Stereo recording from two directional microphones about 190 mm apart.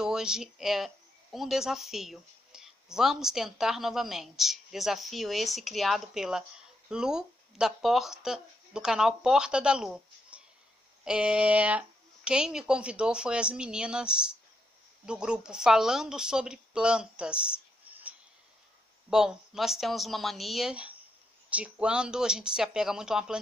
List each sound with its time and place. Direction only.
0.0 s speech: 5° right (ahead or behind)